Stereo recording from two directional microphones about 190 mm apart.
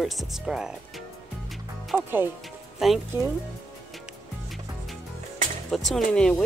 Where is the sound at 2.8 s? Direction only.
Centre (ahead or behind).